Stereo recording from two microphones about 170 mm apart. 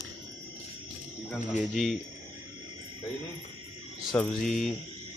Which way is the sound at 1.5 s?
Centre (ahead or behind).